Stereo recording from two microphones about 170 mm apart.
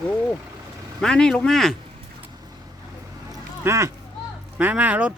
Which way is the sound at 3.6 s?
15° right (ahead or behind).